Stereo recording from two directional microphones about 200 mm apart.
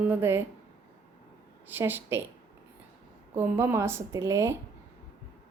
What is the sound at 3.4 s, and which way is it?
Speech, 10° right (ahead or behind).